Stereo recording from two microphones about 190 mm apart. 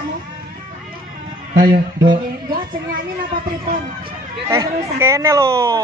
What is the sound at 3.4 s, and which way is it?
Speech, 45° right (ahead or behind).